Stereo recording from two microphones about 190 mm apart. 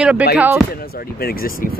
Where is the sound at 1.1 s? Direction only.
50° left (ahead or behind).